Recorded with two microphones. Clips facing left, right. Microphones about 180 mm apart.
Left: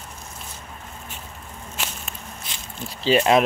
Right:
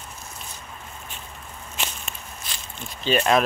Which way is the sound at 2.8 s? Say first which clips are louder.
Left 4 dB; 30° left (ahead or behind).